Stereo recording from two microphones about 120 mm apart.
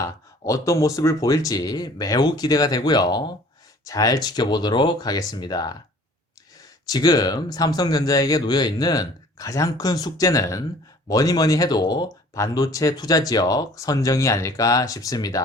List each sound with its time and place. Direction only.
0.0 s speech: 25° left (ahead or behind)
6.8 s speech: 35° left (ahead or behind)